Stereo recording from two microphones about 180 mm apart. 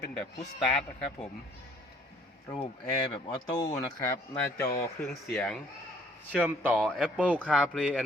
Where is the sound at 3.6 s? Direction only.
20° left (ahead or behind).